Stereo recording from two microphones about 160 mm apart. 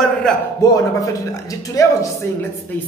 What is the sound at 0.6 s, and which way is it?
Speech, 20° left (ahead or behind).